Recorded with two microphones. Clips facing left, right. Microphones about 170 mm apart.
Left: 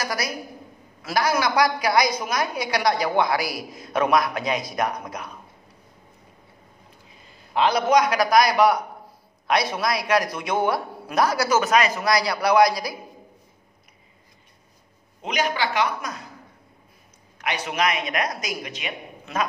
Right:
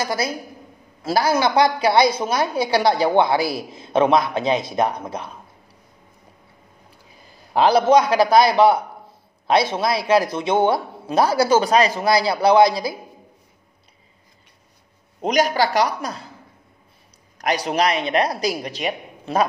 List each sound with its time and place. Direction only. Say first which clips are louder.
0.0 s a woman's voice: right 5 dB; 25° right (ahead or behind)
7.2 s a man's voice: right 5 dB; 35° right (ahead or behind)
15.2 s speech: right 6 dB; 40° right (ahead or behind)
17.4 s speech: right 5 dB; 40° right (ahead or behind)